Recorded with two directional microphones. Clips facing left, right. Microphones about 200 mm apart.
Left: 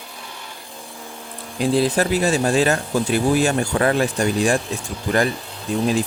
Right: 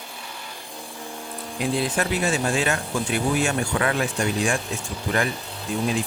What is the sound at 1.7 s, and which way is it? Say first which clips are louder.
Speech: left 7 dB; 35° left (ahead or behind).